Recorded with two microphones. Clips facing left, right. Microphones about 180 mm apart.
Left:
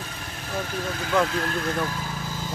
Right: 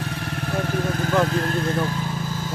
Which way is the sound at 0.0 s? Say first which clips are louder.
Right 8 dB; 65° right (ahead or behind).